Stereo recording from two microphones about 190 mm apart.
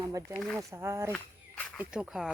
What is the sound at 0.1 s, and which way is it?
Speech, 15° right (ahead or behind).